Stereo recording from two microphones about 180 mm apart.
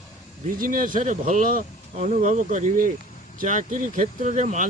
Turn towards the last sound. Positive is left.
turn(degrees=-40)  # may be behind; listen again after turning